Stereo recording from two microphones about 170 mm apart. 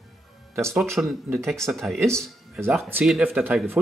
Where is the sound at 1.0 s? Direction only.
15° right (ahead or behind).